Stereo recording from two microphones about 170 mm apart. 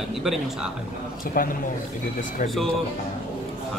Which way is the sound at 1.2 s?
55° left (ahead or behind).